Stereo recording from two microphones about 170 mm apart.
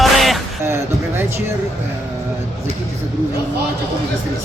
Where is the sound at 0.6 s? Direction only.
15° right (ahead or behind).